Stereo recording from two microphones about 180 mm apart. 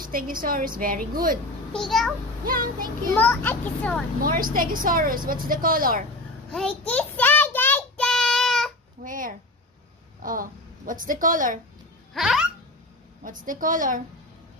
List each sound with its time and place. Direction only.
0.0 s a woman's voice: 50° right (ahead or behind)
1.7 s a child's voice: centre (ahead or behind)
2.4 s a woman's voice: 55° right (ahead or behind)
3.2 s a child's voice: 10° left (ahead or behind)
4.2 s a woman's voice: 50° right (ahead or behind)
6.5 s child singing: 5° left (ahead or behind)
9.0 s a sound: 50° right (ahead or behind)
10.2 s a woman's voice: 50° right (ahead or behind)
12.1 s a sound: centre (ahead or behind)
13.2 s a woman's voice: 50° right (ahead or behind)